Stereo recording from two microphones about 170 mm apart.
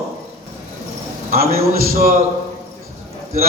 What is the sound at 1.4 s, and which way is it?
Speech, 60° right (ahead or behind).